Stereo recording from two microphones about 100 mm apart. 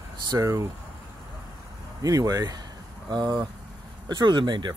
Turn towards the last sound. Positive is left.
turn(degrees=-50)  # may be behind; listen again after turning